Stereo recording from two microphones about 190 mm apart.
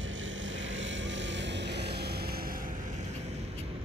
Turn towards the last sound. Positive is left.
turn(degrees=-45)  # may be behind; listen again after turning